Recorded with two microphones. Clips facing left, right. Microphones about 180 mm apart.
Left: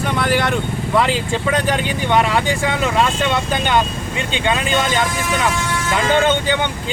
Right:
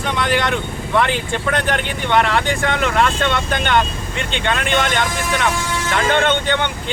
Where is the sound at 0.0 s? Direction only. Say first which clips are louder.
Left 1 dB; 5° left (ahead or behind).